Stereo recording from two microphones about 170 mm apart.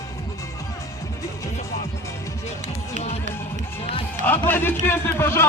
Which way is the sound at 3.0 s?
40° left (ahead or behind).